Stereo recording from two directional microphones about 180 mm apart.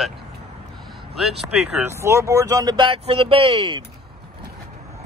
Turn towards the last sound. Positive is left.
turn(degrees=-30)  # may be behind; listen again after turning